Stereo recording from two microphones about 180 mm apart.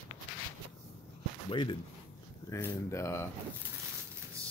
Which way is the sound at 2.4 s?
15° left (ahead or behind).